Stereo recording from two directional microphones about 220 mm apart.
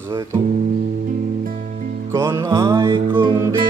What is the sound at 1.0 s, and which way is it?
Music, 35° right (ahead or behind).